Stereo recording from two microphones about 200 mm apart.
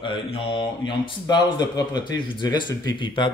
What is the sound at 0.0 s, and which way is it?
Speech, 25° left (ahead or behind).